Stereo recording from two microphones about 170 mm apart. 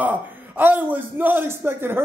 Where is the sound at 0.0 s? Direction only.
10° right (ahead or behind).